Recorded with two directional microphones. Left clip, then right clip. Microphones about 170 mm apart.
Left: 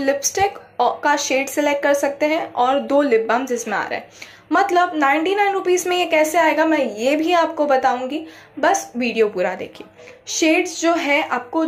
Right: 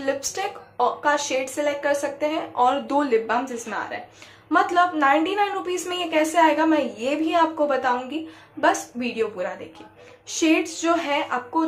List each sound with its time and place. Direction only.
0.0 s a woman's voice: 15° left (ahead or behind)
2.6 s a woman's voice: 15° left (ahead or behind)